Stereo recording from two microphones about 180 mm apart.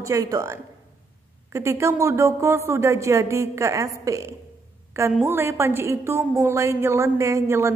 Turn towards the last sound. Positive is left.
turn(degrees=-15)  # may be behind; listen again after turning